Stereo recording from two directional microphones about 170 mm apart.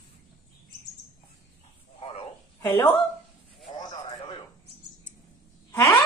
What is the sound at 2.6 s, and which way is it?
Speech, 15° left (ahead or behind).